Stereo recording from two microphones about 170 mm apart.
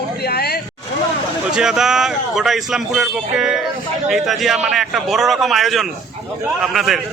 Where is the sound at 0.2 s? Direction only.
70° left (ahead or behind).